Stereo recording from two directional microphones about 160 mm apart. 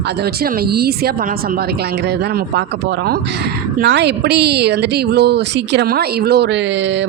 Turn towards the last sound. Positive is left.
turn(degrees=-90)